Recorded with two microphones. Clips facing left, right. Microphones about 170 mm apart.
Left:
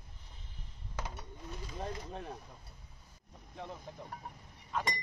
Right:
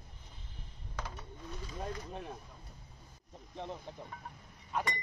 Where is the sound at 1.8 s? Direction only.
5° right (ahead or behind).